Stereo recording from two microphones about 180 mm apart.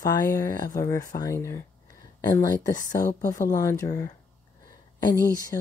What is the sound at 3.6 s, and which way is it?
Speech, 15° left (ahead or behind).